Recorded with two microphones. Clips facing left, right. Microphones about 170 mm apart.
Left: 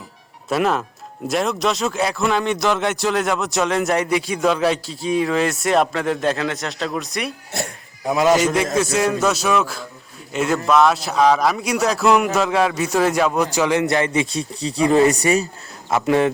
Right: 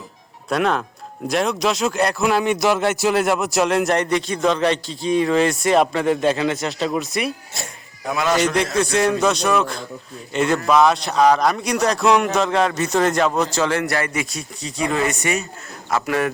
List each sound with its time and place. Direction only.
0.4 s speech: 5° left (ahead or behind)
8.8 s speech: centre (ahead or behind); by 15.4 s 35° left (ahead or behind)
15.9 s speech: 25° left (ahead or behind)